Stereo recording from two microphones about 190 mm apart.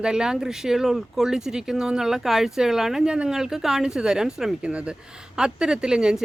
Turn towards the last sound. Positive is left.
turn(degrees=-5)  # may be behind; listen again after turning